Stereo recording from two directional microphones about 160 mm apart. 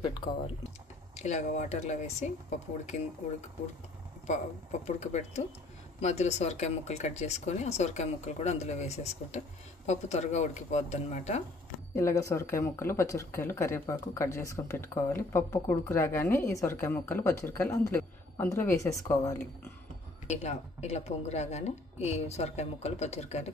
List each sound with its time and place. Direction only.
1.1 s speech: 45° left (ahead or behind)
4.8 s speech: 45° left (ahead or behind)
11.9 s speech: 15° left (ahead or behind)
20.2 s speech: 45° left (ahead or behind)